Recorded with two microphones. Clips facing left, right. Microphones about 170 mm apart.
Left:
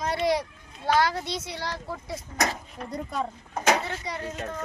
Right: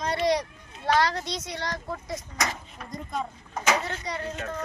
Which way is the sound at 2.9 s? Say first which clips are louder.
Left 2 dB; 70° left (ahead or behind).